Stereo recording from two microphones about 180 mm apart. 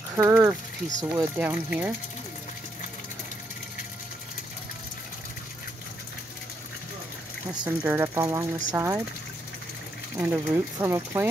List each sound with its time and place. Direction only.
0.1 s speech: 15° right (ahead or behind)
7.6 s speech: 10° right (ahead or behind)
10.1 s speech: 10° right (ahead or behind)